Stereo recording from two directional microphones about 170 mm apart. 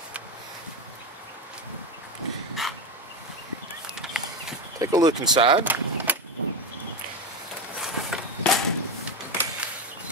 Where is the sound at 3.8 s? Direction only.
5° right (ahead or behind).